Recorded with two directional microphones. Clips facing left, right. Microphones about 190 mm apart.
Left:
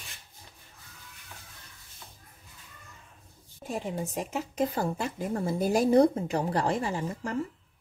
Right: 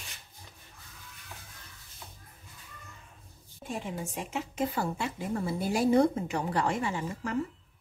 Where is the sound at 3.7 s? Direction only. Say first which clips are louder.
Left 3 dB; 40° left (ahead or behind).